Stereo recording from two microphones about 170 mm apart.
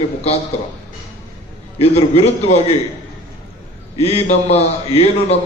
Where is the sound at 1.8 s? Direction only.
35° left (ahead or behind).